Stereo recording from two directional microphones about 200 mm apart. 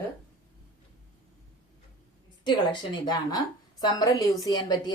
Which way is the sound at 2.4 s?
20° left (ahead or behind).